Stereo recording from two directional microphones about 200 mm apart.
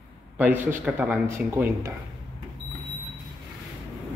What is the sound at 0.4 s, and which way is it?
Speech, 10° right (ahead or behind).